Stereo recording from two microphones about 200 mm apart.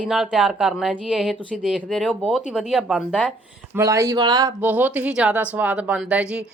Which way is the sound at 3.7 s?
15° right (ahead or behind).